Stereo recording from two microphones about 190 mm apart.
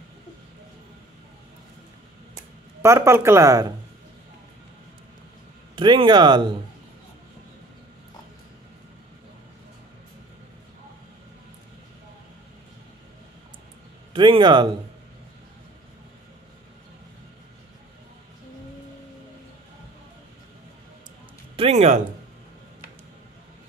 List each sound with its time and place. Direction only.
2.8 s speech: 15° right (ahead or behind)
5.8 s speech: 25° right (ahead or behind)
14.1 s speech: 25° right (ahead or behind)
21.5 s speech: 35° right (ahead or behind)